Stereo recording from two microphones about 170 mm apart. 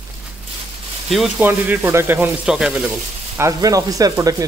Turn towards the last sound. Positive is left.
turn(degrees=-20)  # may be behind; listen again after turning